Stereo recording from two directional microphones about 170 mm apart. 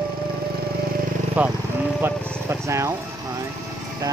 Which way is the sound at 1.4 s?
10° right (ahead or behind).